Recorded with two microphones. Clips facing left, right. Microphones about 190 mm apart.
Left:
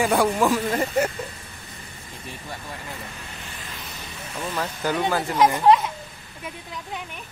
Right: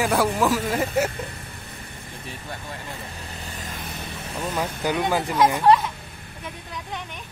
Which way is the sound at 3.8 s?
55° right (ahead or behind).